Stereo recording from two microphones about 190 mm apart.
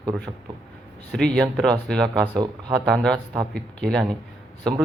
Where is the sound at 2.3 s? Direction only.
25° right (ahead or behind).